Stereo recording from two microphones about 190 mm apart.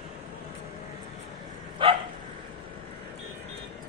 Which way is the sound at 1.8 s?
25° right (ahead or behind).